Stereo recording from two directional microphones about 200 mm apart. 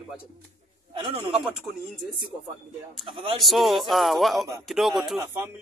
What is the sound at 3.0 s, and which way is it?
Speech, 25° right (ahead or behind).